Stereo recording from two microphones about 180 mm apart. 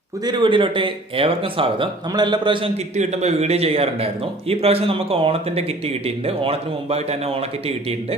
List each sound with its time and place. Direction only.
0.3 s speech: 25° right (ahead or behind)